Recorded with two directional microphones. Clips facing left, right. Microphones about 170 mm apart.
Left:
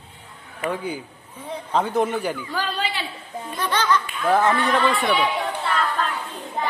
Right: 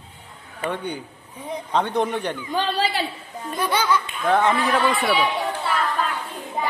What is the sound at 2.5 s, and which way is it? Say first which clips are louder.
Speech: right 3 dB; 20° right (ahead or behind).